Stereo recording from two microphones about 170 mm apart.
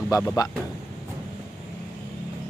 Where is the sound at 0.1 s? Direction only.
20° left (ahead or behind).